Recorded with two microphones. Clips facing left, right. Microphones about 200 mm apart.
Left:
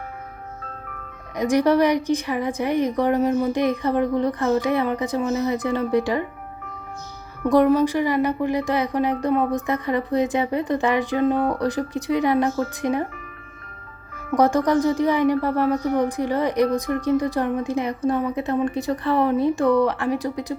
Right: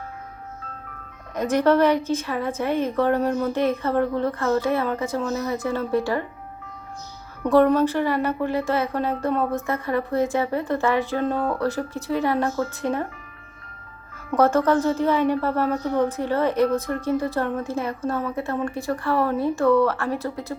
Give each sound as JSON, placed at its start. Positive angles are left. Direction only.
{"t": 1.4, "sound": "a woman's voice", "side_deg": 15}
{"t": 7.5, "sound": "a woman's voice", "side_deg": 10}
{"t": 14.3, "sound": "a woman's voice", "side_deg": 15}